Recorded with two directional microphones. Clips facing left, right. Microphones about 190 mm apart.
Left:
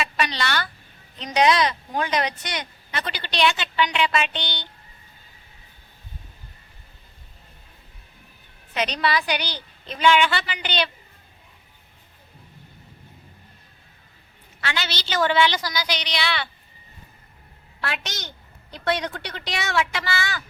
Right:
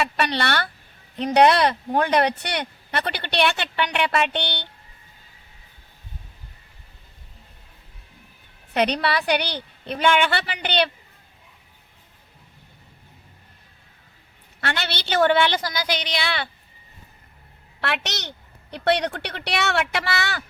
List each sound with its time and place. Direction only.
0.0 s speech: 60° right (ahead or behind)
8.7 s speech: 60° right (ahead or behind)
14.6 s speech: 55° right (ahead or behind)
17.7 s speech: 65° right (ahead or behind)